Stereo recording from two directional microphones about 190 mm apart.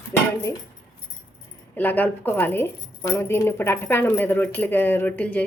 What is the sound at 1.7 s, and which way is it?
Speech, 10° left (ahead or behind).